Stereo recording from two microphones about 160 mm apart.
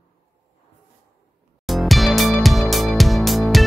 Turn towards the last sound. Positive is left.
turn(degrees=0)  # may be behind; listen again after turning